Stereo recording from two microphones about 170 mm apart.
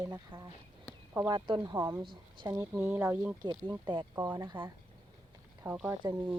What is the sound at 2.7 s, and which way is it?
Speech, 10° right (ahead or behind).